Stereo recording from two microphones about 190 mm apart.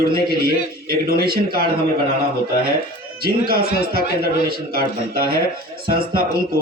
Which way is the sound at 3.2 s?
55° right (ahead or behind).